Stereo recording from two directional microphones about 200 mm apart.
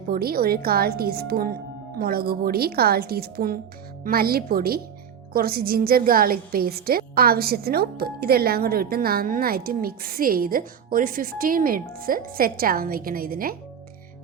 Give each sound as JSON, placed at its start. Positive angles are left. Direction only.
{"t": 0.1, "sound": "a woman's voice", "side_deg": -50}